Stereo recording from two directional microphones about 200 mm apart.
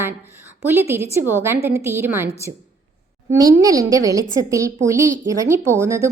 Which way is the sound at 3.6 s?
15° right (ahead or behind).